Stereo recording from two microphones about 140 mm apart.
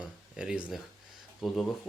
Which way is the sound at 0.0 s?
5° right (ahead or behind).